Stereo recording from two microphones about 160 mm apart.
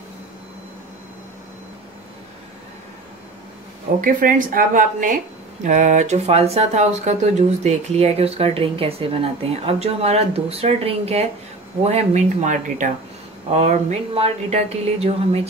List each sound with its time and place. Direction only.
4.0 s speech: 60° right (ahead or behind); by 15.4 s 40° right (ahead or behind)